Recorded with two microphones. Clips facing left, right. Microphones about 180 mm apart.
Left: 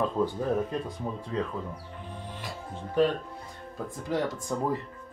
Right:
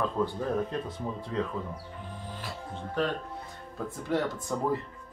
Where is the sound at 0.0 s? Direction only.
15° left (ahead or behind).